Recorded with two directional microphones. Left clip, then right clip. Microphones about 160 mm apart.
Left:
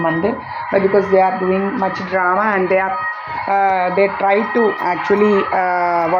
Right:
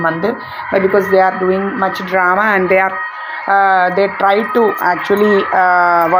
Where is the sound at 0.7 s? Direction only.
15° right (ahead or behind).